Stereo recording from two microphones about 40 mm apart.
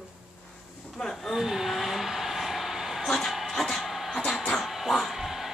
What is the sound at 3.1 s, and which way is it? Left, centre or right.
Speech, centre.